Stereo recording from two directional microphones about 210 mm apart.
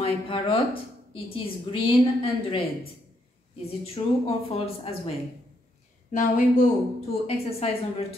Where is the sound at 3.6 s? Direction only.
30° left (ahead or behind).